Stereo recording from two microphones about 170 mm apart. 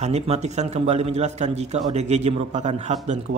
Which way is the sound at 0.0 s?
40° right (ahead or behind).